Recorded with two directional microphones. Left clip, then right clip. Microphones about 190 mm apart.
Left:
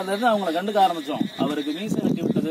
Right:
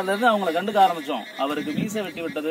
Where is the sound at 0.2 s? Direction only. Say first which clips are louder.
Even; 15° right (ahead or behind).